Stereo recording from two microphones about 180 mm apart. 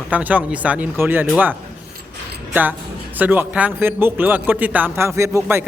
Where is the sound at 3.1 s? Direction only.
10° right (ahead or behind).